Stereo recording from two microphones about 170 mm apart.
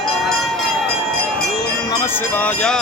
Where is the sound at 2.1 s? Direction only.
10° left (ahead or behind).